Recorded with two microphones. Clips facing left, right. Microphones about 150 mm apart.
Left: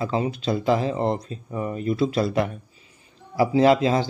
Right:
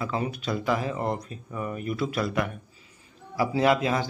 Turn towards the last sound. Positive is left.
turn(degrees=30)  # may be behind; listen again after turning